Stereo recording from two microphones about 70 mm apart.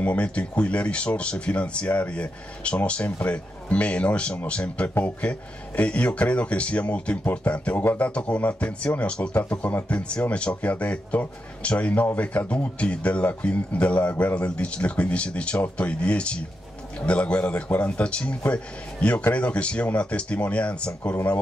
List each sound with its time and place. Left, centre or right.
0.0 s speech: centre